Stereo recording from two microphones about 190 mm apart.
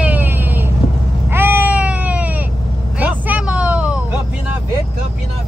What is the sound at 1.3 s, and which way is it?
Baby cry, 10° right (ahead or behind).